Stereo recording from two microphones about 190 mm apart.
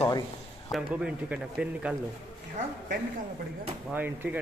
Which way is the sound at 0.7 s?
5° right (ahead or behind).